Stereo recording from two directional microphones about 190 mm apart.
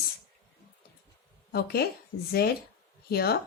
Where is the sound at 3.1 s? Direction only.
55° left (ahead or behind).